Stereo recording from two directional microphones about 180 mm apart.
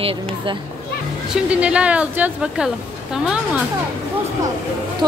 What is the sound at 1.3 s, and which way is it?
Speech, 5° right (ahead or behind).